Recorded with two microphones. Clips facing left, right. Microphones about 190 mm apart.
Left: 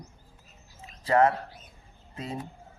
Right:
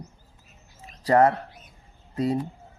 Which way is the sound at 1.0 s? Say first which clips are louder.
Right 3 dB; 40° right (ahead or behind).